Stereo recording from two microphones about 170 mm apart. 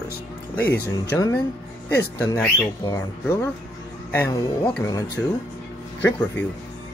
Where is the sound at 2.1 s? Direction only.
20° left (ahead or behind).